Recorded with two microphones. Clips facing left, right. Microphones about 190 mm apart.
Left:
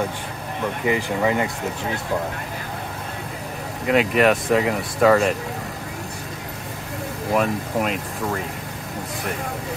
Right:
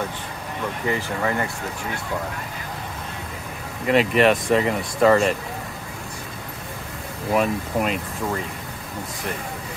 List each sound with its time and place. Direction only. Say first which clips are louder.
0.8 s speech: left 4 dB; 15° left (ahead or behind)
3.8 s speech: even; centre (ahead or behind)
7.3 s speech: even; centre (ahead or behind)